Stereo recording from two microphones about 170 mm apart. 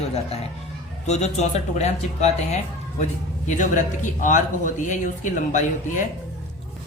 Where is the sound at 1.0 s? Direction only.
40° left (ahead or behind).